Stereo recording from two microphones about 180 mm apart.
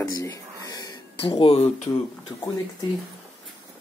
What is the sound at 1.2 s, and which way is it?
Speech, 30° left (ahead or behind).